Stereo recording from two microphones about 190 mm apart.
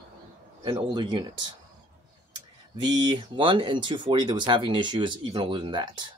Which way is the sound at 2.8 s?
25° right (ahead or behind).